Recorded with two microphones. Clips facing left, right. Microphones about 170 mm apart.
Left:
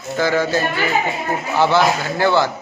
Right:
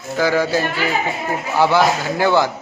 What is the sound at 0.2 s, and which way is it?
Speech, 10° right (ahead or behind).